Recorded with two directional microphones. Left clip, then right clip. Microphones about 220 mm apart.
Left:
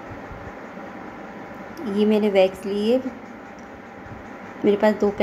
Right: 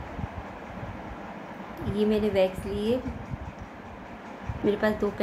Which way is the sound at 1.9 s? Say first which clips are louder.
Left 6 dB; 15° left (ahead or behind).